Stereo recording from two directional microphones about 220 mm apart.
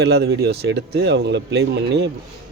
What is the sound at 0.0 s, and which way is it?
Speech, 50° right (ahead or behind).